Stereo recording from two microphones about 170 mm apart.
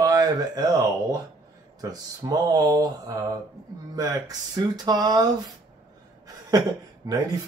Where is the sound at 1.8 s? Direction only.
20° right (ahead or behind).